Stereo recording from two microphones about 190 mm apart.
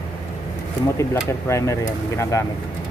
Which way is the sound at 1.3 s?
15° left (ahead or behind).